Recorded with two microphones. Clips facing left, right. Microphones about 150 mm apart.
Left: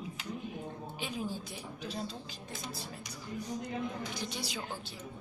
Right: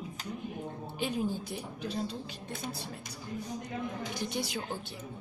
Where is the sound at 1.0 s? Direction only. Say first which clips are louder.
Right 6 dB; 60° right (ahead or behind).